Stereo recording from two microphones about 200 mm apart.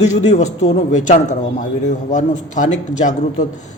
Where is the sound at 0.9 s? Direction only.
35° left (ahead or behind).